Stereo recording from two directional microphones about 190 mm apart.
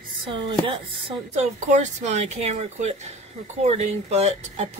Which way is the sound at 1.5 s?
40° right (ahead or behind).